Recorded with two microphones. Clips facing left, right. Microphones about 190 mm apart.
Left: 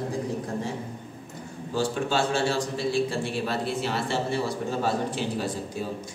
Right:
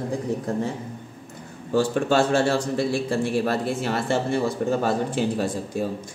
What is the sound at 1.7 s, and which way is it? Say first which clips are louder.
A man's voice: right 6 dB; 55° right (ahead or behind).